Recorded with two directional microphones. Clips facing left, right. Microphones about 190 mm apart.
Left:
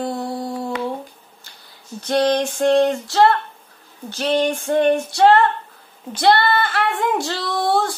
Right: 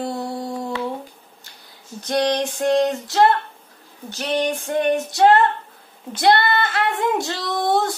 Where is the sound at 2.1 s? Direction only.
15° right (ahead or behind).